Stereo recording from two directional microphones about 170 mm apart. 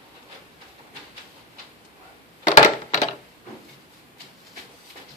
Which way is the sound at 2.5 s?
45° left (ahead or behind).